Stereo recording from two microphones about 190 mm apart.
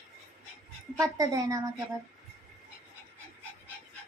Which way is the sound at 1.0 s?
20° right (ahead or behind).